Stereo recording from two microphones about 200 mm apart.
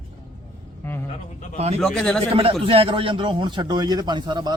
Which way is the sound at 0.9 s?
10° left (ahead or behind).